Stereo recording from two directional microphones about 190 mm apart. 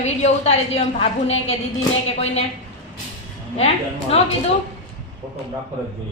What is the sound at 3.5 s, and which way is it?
Speech, 35° left (ahead or behind).